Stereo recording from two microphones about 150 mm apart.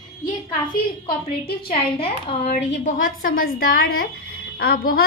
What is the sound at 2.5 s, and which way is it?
A woman's voice, 55° left (ahead or behind).